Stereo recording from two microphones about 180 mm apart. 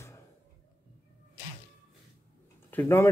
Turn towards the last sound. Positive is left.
turn(degrees=10)  # may be behind; listen again after turning